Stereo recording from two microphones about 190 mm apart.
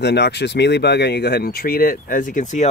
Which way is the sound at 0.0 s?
60° left (ahead or behind).